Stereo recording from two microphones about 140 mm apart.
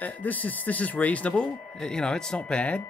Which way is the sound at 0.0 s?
10° left (ahead or behind).